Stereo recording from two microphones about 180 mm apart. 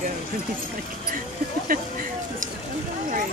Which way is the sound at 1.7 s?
50° right (ahead or behind).